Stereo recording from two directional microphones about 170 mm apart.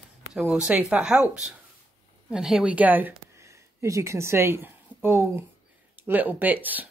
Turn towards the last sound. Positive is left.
turn(degrees=-10)  # may be behind; listen again after turning